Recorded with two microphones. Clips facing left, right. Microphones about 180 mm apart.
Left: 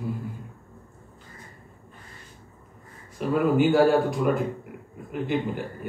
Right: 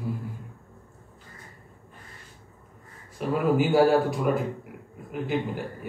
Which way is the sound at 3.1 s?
Centre (ahead or behind).